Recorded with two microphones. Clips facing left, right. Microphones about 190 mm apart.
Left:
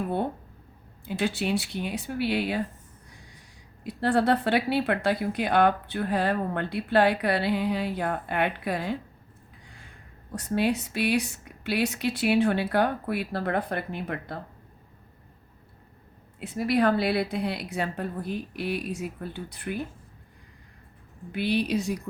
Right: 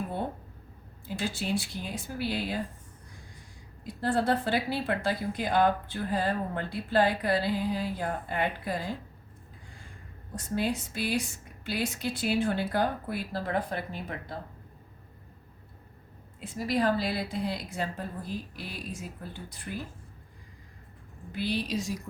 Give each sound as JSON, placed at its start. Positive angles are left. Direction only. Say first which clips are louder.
{"t": 1.0, "sound": "speech", "louder": "left 5 dB", "side_deg": 65}
{"t": 3.8, "sound": "speech", "louder": "left 4 dB", "side_deg": 65}
{"t": 10.3, "sound": "speech", "louder": "left 5 dB", "side_deg": 65}
{"t": 16.4, "sound": "a woman's voice", "louder": "left 4 dB", "side_deg": 60}
{"t": 21.3, "sound": "a woman's voice", "louder": "left 5 dB", "side_deg": 60}